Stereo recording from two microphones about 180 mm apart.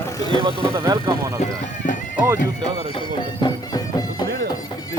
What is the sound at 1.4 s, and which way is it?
Speech, 45° left (ahead or behind).